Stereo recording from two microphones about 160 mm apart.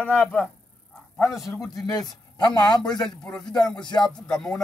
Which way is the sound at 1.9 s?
25° left (ahead or behind).